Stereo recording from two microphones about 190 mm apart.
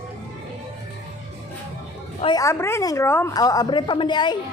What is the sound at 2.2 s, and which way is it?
A woman's voice, 20° left (ahead or behind).